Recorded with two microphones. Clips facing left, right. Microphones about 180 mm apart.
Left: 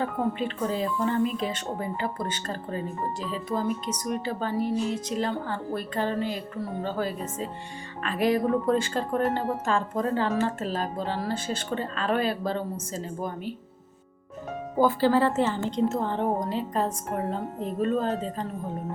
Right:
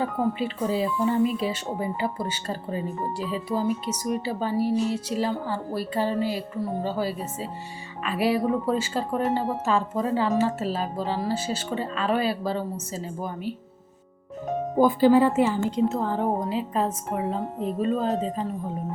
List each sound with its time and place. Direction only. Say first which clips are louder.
0.0 s speech: right 2 dB; 10° right (ahead or behind)
12.0 s speech: right 1 dB; 50° left (ahead or behind)
12.4 s a woman's voice: right 1 dB; 5° right (ahead or behind)
14.8 s a woman's voice: right 4 dB; 15° right (ahead or behind)